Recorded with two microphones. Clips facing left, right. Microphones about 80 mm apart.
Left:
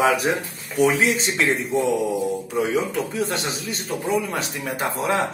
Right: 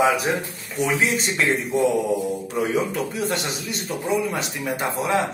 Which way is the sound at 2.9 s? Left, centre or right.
Left.